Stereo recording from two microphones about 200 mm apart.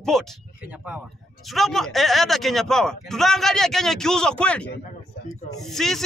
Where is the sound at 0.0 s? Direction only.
Centre (ahead or behind).